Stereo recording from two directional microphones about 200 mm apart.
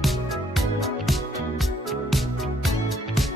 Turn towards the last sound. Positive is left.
turn(degrees=0)  # may be behind; listen again after turning